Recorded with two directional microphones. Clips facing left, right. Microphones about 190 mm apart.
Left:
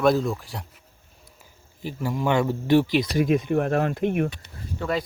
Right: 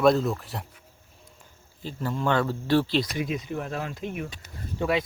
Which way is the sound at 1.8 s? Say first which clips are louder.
Left 2 dB; 15° left (ahead or behind).